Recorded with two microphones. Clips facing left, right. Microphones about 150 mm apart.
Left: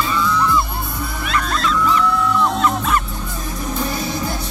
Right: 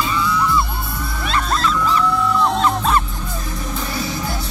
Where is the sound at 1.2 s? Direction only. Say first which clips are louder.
Right 1 dB; 35° right (ahead or behind).